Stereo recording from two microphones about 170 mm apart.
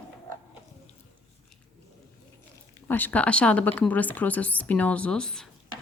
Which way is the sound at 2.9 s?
10° left (ahead or behind).